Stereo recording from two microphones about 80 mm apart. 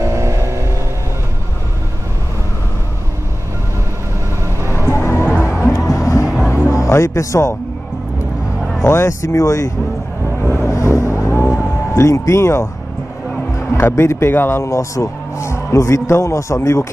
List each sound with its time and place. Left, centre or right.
0.0 s vehicle: right
4.6 s music: right
4.8 s music: left
6.2 s music: centre
6.7 s speech: left
8.8 s speech: left
10.5 s vehicle: left
11.9 s speech: left
13.5 s music: left
14.0 s speech: left